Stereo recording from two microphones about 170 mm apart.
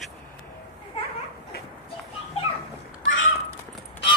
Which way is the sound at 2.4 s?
35° left (ahead or behind).